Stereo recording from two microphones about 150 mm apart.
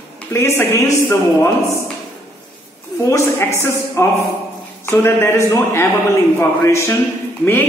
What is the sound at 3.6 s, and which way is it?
Music, 15° left (ahead or behind).